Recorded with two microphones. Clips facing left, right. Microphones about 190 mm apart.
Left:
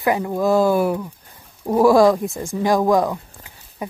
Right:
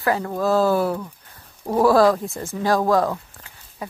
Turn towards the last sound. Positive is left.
turn(degrees=15)  # may be behind; listen again after turning